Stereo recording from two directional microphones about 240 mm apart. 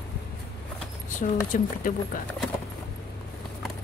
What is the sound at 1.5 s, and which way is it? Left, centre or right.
Speech, left.